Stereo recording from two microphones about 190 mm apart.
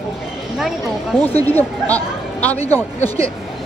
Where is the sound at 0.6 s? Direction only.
5° right (ahead or behind).